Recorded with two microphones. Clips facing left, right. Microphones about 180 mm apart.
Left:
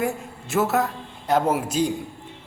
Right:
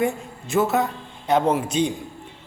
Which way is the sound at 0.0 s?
5° left (ahead or behind).